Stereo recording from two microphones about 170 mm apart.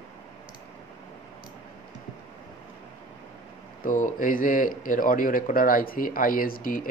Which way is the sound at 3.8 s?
50° left (ahead or behind).